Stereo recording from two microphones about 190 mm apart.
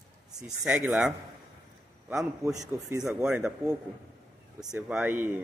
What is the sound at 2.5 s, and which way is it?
Speech, 20° right (ahead or behind).